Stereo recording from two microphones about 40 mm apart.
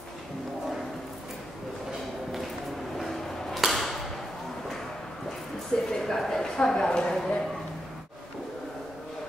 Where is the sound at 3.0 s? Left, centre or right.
Centre.